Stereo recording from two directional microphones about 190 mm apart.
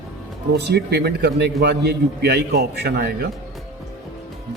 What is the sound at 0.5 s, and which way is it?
A man's voice, 60° right (ahead or behind).